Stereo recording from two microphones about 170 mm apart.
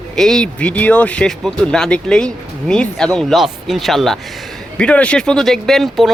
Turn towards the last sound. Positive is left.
turn(degrees=0)  # may be behind; listen again after turning